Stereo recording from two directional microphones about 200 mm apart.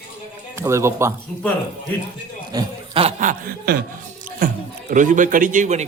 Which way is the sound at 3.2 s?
45° right (ahead or behind).